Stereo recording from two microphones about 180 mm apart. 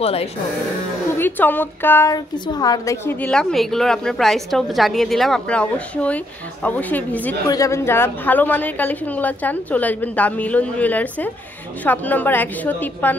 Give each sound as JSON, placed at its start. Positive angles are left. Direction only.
{"t": 0.0, "sound": "speech", "side_deg": 35}
{"t": 1.1, "sound": "a woman's voice", "side_deg": 10}